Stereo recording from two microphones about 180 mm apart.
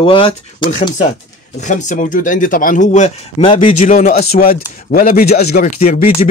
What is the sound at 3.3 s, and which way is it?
Speech, 30° left (ahead or behind).